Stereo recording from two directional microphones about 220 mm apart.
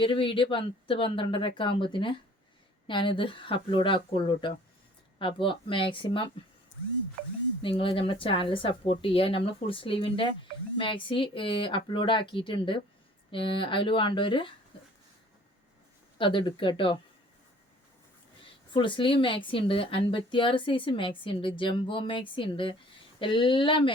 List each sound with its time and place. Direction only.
0.0 s a woman's voice: 25° left (ahead or behind)
7.6 s a woman's voice: 25° left (ahead or behind)
16.1 s a woman's voice: 25° left (ahead or behind)
18.7 s a woman's voice: 20° left (ahead or behind)